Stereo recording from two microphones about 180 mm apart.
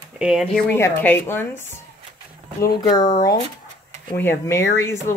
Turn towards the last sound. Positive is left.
turn(degrees=15)  # may be behind; listen again after turning